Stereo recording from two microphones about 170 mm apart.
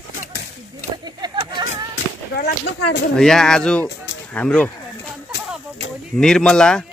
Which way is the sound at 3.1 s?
5° left (ahead or behind).